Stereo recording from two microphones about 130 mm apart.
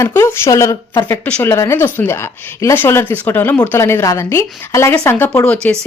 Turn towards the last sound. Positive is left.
turn(degrees=20)  # may be behind; listen again after turning